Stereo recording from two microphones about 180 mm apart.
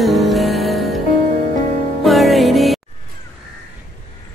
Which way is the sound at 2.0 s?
Centre (ahead or behind).